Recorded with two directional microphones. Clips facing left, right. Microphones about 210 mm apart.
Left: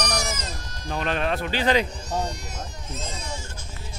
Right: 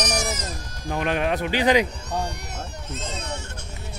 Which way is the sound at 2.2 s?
65° right (ahead or behind).